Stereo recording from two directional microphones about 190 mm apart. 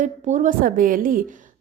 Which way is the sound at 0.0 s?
40° right (ahead or behind).